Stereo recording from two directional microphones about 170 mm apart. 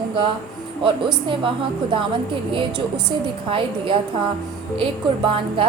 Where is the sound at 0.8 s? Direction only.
30° right (ahead or behind).